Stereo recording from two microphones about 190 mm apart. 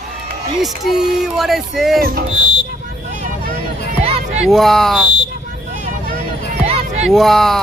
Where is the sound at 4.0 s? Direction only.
30° right (ahead or behind).